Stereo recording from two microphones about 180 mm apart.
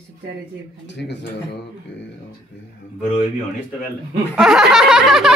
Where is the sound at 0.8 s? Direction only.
75° left (ahead or behind).